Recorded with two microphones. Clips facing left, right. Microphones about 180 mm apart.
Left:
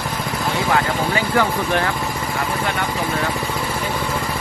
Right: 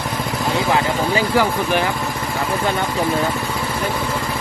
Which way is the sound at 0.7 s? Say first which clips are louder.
Even; 15° right (ahead or behind).